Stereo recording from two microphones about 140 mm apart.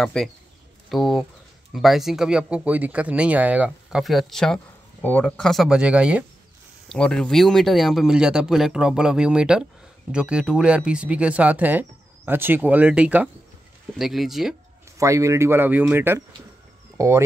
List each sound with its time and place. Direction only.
0.0 s speech: 5° left (ahead or behind)
6.9 s speech: 5° left (ahead or behind)
15.0 s speech: 20° right (ahead or behind)